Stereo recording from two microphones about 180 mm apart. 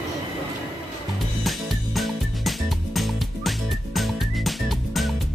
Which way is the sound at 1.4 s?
Centre (ahead or behind).